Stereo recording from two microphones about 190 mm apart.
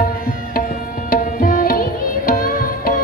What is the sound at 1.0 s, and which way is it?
Music, 50° left (ahead or behind).